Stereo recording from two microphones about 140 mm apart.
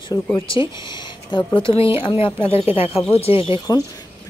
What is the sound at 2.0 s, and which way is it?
Speech, 35° left (ahead or behind).